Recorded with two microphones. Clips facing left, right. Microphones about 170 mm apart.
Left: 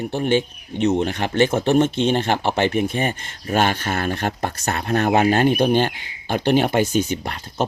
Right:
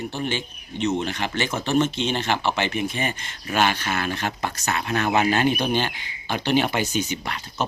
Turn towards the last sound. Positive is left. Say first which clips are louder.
# left 4 dB
turn(degrees=50)  # may be behind; listen again after turning